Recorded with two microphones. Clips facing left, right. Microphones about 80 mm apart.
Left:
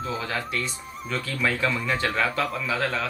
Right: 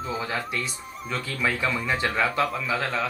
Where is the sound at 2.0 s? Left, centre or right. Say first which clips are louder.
Right 2 dB; centre.